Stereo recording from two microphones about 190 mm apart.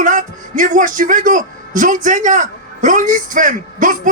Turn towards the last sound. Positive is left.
turn(degrees=-45)  # may be behind; listen again after turning